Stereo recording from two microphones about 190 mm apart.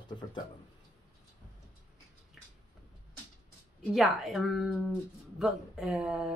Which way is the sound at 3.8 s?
Centre (ahead or behind).